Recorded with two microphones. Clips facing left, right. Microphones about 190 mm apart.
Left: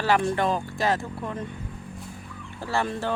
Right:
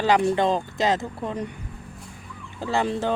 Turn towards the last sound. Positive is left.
turn(degrees=-20)  # may be behind; listen again after turning